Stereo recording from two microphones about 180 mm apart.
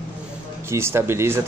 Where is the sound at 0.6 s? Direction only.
15° right (ahead or behind).